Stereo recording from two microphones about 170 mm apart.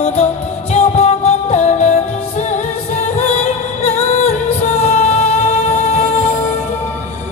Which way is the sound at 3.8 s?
40° left (ahead or behind).